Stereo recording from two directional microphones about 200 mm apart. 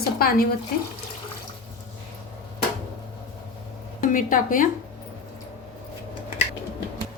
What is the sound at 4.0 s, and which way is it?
Speech, 45° left (ahead or behind).